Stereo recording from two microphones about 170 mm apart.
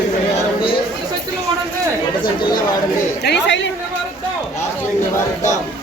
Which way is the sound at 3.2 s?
90° left.